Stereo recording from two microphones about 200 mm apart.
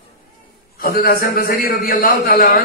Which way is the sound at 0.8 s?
50° left (ahead or behind).